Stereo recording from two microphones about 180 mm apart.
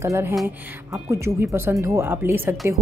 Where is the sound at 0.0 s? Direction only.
15° right (ahead or behind).